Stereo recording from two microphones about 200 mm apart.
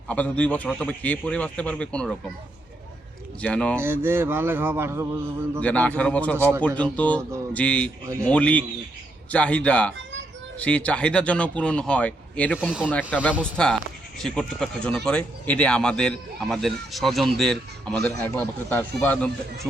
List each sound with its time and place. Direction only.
0.1 s a man's voice: 5° left (ahead or behind)
3.4 s speech: 5° left (ahead or behind)
3.8 s speech: 10° right (ahead or behind)
5.5 s a man's voice: 5° left (ahead or behind)
7.2 s speech: 15° right (ahead or behind)
7.5 s a man's voice: 5° left (ahead or behind)
8.0 s speech: 15° right (ahead or behind)
8.3 s a man's voice: 5° left (ahead or behind)
12.5 s speech: 5° right (ahead or behind)
12.9 s a man's voice: 5° left (ahead or behind)